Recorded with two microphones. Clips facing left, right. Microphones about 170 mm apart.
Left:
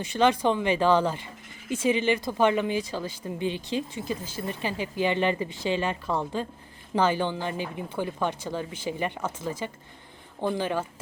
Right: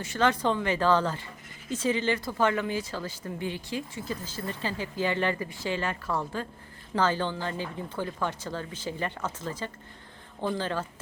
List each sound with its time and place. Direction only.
0.0 s speech: 15° left (ahead or behind)